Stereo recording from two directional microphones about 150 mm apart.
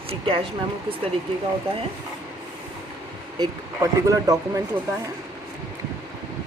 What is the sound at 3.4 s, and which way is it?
Speech, 25° right (ahead or behind).